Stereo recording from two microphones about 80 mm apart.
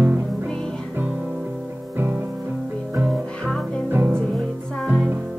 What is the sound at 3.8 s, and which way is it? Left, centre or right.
Music, right.